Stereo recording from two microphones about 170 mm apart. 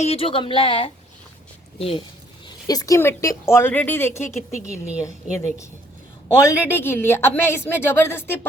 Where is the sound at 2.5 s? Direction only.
20° left (ahead or behind).